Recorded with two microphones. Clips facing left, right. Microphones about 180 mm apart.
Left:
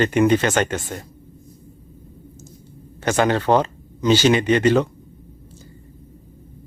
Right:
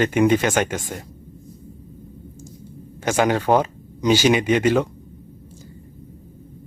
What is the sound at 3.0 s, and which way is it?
Speech, 10° right (ahead or behind).